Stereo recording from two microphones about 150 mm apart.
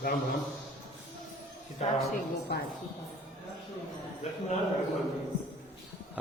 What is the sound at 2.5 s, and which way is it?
Speech, 90° left.